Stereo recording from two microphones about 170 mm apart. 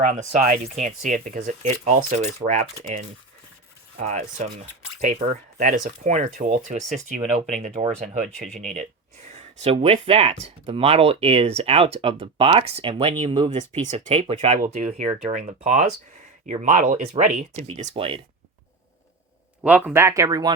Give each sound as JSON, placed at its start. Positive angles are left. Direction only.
{"t": 0.1, "sound": "speech", "side_deg": -45}
{"t": 5.5, "sound": "speech", "side_deg": -45}
{"t": 13.6, "sound": "speech", "side_deg": -45}
{"t": 19.6, "sound": "speech", "side_deg": -10}